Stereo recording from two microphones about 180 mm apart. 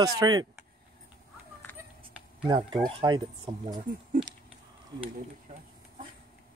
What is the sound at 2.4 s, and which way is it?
A man's voice, 25° right (ahead or behind).